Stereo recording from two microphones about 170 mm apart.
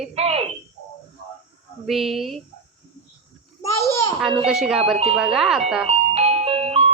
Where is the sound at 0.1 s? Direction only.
40° right (ahead or behind).